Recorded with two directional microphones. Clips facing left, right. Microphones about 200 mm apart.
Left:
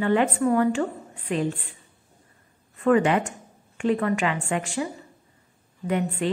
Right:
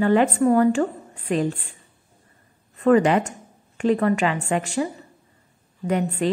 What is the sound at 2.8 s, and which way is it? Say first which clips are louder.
A woman's voice: right 3 dB; 35° right (ahead or behind).